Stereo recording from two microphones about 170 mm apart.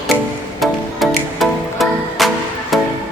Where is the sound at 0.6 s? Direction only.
Centre (ahead or behind).